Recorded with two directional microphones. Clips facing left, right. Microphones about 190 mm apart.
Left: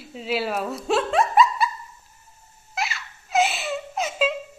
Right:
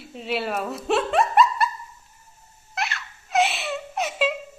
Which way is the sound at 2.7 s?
Centre (ahead or behind).